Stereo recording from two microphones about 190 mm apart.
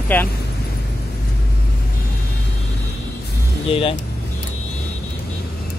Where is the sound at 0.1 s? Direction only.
10° left (ahead or behind).